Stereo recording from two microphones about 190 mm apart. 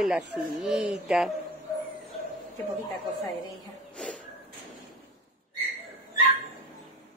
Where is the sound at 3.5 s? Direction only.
5° left (ahead or behind).